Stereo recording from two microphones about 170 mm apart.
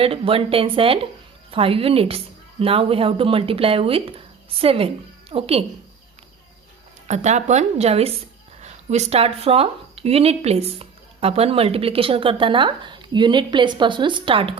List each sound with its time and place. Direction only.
0.0 s speech: 35° right (ahead or behind)
7.1 s speech: 45° right (ahead or behind)